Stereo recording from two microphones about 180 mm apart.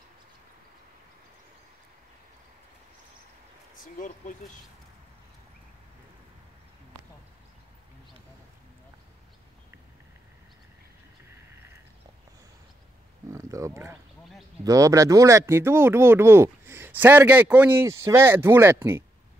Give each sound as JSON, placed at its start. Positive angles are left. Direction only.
{"t": 3.7, "sound": "speech", "side_deg": 50}
{"t": 13.3, "sound": "a sound", "side_deg": -15}
{"t": 14.6, "sound": "speech", "side_deg": -20}